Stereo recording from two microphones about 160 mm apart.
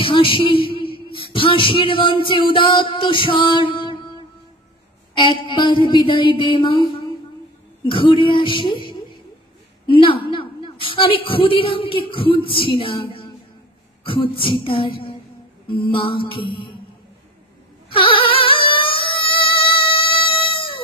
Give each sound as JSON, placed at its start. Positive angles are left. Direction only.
{"t": 0.0, "sound": "speech", "side_deg": 35}
{"t": 5.1, "sound": "a sound", "side_deg": 30}
{"t": 7.8, "sound": "a woman's voice", "side_deg": 30}
{"t": 14.0, "sound": "throat clearing", "side_deg": 35}
{"t": 14.4, "sound": "a woman's voice", "side_deg": 30}
{"t": 17.8, "sound": "music", "side_deg": 35}